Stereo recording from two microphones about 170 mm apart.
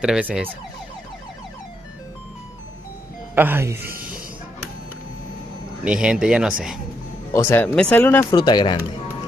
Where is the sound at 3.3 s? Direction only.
10° right (ahead or behind).